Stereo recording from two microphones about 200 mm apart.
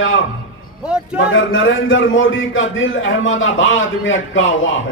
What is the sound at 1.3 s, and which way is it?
A man's voice, 75° left (ahead or behind).